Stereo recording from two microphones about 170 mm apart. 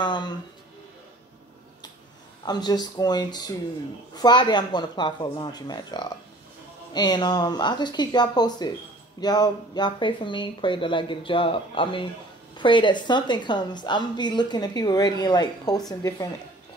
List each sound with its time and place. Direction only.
0.0 s speech: 25° left (ahead or behind)
2.4 s a woman's voice: 25° left (ahead or behind)